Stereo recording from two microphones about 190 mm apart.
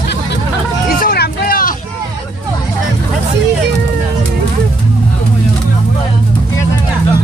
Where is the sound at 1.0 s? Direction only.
55° left (ahead or behind).